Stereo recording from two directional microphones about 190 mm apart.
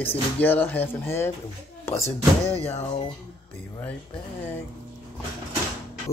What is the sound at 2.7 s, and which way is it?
Speech, 35° left (ahead or behind).